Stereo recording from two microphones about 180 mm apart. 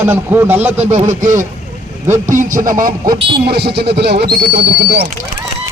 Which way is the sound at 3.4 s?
65° right (ahead or behind).